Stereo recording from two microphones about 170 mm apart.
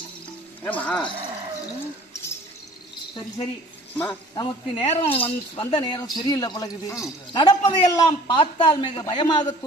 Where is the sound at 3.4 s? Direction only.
30° left (ahead or behind).